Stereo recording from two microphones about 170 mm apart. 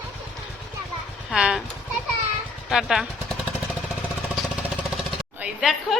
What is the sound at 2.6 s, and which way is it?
Speech, centre (ahead or behind).